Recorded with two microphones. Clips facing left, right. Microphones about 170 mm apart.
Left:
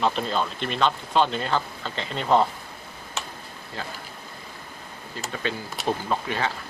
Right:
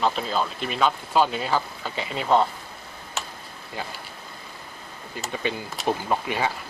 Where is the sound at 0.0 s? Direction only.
Centre (ahead or behind).